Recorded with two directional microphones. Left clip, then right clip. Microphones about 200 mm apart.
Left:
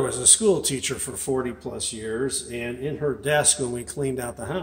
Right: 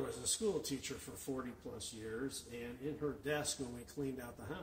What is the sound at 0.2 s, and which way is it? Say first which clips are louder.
A man's voice: left 19 dB; 35° left (ahead or behind).